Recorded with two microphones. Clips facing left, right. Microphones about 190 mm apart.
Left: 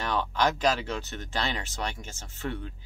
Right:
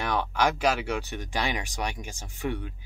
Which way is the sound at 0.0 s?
15° right (ahead or behind).